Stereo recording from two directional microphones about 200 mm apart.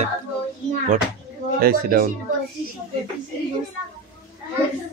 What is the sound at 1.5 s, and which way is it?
Speech, 45° right (ahead or behind).